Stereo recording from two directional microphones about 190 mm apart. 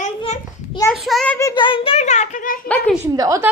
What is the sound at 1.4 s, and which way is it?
A child's voice, 20° left (ahead or behind).